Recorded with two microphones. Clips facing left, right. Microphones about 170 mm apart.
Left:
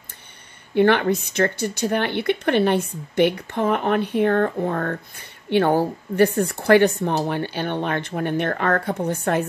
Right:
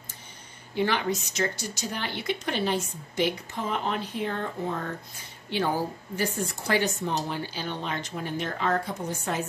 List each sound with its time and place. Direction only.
0.7 s speech: 60° left (ahead or behind)